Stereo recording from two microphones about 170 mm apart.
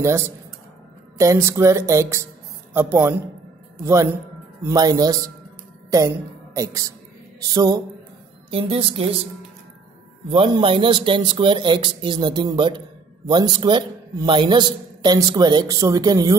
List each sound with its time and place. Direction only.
0.0 s a man's voice: 15° right (ahead or behind)
8.5 s a woman's voice: 35° right (ahead or behind)
10.3 s a man's voice: 30° right (ahead or behind)